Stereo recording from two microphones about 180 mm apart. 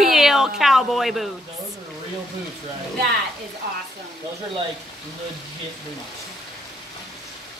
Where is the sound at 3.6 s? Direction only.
60° right (ahead or behind).